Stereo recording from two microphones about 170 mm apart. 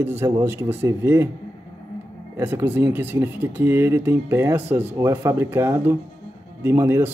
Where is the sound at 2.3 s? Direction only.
10° right (ahead or behind).